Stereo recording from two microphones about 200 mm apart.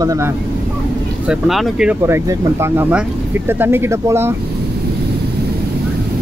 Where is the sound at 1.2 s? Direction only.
Centre (ahead or behind).